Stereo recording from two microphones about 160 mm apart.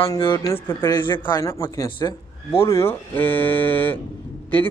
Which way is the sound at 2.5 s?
15° left (ahead or behind).